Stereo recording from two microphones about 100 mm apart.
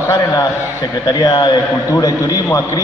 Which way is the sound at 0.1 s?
35° left (ahead or behind).